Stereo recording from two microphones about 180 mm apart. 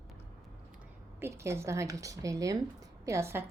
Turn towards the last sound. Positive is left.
turn(degrees=-15)  # may be behind; listen again after turning